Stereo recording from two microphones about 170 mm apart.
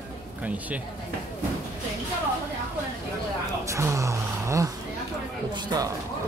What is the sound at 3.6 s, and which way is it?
Gasp, 15° right (ahead or behind).